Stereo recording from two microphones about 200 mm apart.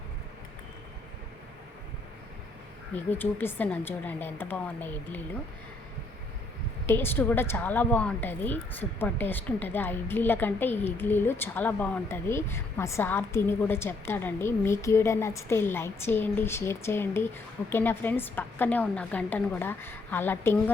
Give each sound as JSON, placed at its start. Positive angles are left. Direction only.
{"t": 2.9, "sound": "a woman's voice", "side_deg": 10}
{"t": 6.8, "sound": "a woman's voice", "side_deg": 10}